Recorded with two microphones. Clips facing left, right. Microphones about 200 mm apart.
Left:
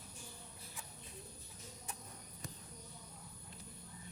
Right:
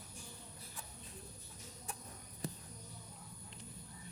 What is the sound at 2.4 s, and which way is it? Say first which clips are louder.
Basketball bounce: right 8 dB; 30° right (ahead or behind).